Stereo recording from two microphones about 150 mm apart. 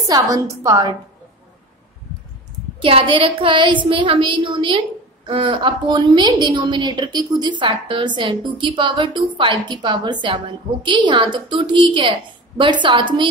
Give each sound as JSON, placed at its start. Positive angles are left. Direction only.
{"t": 0.1, "sound": "a woman's voice", "side_deg": -20}
{"t": 2.8, "sound": "a woman's voice", "side_deg": -35}